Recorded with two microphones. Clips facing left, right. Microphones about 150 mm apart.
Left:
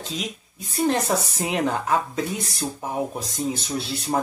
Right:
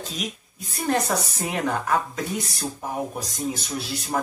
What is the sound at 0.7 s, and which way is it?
A woman's voice, 15° left (ahead or behind).